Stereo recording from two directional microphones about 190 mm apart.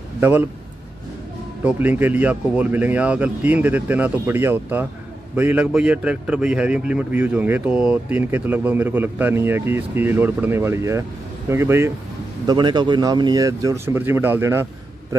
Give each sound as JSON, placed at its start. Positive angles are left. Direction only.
{"t": 0.2, "sound": "a man's voice", "side_deg": -10}
{"t": 1.6, "sound": "a man's voice", "side_deg": -10}